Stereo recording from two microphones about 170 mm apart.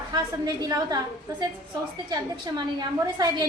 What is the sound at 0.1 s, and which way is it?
Speech, 20° right (ahead or behind).